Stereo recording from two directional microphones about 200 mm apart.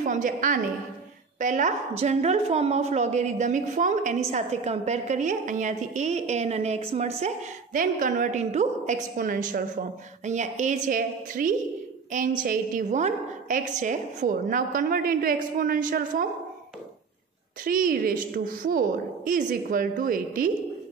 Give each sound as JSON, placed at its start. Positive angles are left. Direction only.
{"t": 0.0, "sound": "a woman's voice", "side_deg": -40}
{"t": 17.6, "sound": "a woman's voice", "side_deg": -45}